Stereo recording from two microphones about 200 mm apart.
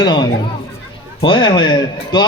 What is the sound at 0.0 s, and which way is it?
A child's voice, 20° left (ahead or behind).